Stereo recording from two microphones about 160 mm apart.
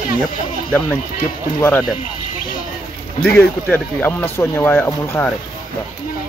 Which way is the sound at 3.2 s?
10° left (ahead or behind).